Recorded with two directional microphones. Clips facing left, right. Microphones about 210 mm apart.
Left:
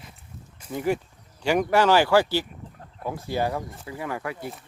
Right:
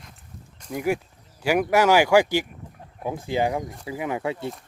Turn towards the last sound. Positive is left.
turn(degrees=-25)  # may be behind; listen again after turning